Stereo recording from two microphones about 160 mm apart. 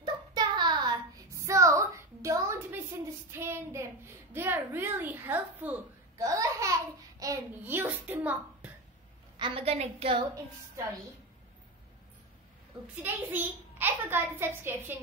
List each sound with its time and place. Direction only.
0.0 s child singing: 25° right (ahead or behind)
3.3 s a child's voice: 15° right (ahead or behind)
6.1 s a sound: 20° right (ahead or behind)
9.4 s a woman's voice: 35° right (ahead or behind)
12.8 s a child's voice: 10° right (ahead or behind)